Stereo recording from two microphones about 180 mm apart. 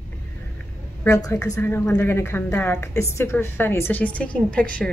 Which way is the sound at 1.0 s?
20° left (ahead or behind).